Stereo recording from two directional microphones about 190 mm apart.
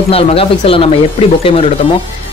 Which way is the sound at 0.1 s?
30° left (ahead or behind).